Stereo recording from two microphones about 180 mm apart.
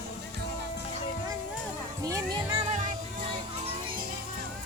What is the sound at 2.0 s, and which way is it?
Music, 20° right (ahead or behind).